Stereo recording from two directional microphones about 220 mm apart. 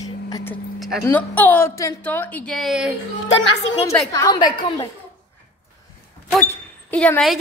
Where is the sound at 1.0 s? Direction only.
10° left (ahead or behind).